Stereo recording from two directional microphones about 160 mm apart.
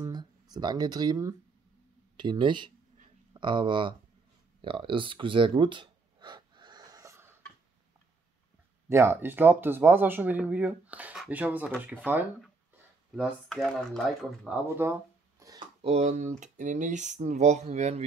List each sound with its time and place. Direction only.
0.0 s speech: 25° right (ahead or behind)
4.6 s a sound: 30° right (ahead or behind); by 7.3 s 15° right (ahead or behind)
8.8 s speech: 15° right (ahead or behind)
13.5 s speech: 5° left (ahead or behind)
14.8 s a sound: 15° right (ahead or behind)
15.8 s speech: 40° right (ahead or behind)